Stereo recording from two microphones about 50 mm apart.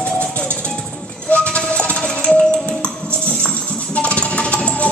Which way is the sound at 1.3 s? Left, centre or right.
Left.